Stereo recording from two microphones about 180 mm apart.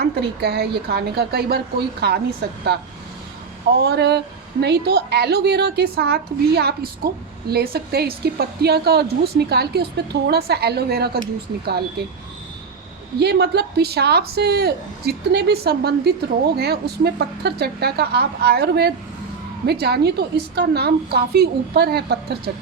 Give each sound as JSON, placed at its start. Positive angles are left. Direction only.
{"t": 0.0, "sound": "a woman's voice", "side_deg": -65}
{"t": 3.8, "sound": "a woman's voice", "side_deg": -65}
{"t": 13.1, "sound": "a woman's voice", "side_deg": -65}